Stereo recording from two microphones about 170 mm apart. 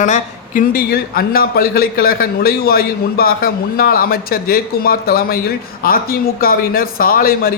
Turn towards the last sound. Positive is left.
turn(degrees=60)  # may be behind; listen again after turning